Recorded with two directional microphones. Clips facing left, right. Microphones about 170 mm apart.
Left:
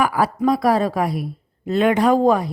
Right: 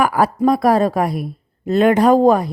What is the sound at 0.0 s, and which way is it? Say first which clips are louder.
A woman's voice: right 3 dB; 50° right (ahead or behind).